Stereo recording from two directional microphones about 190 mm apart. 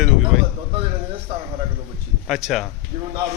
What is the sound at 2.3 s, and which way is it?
Speech, centre (ahead or behind).